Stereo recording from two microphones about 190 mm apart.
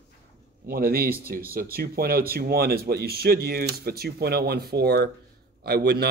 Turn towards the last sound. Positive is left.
turn(degrees=-60)  # may be behind; listen again after turning